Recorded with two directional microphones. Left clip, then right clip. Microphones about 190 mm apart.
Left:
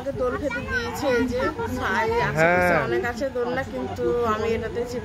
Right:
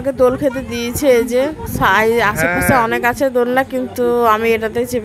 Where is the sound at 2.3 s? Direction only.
5° left (ahead or behind).